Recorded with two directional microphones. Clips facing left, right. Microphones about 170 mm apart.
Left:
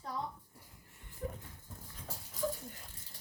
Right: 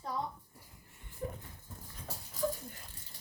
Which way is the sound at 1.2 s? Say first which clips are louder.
Right 1 dB; 25° right (ahead or behind).